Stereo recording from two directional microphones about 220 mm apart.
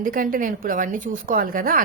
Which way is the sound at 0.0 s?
40° right (ahead or behind).